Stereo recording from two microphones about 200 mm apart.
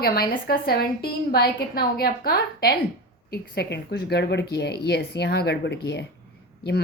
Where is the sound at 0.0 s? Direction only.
50° left (ahead or behind).